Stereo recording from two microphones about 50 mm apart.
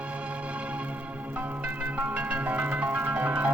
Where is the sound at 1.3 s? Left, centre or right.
Right.